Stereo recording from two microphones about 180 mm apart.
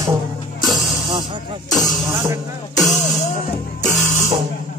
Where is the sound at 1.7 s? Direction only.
Centre (ahead or behind).